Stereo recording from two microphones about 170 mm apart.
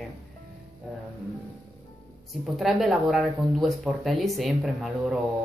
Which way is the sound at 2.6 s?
Centre (ahead or behind).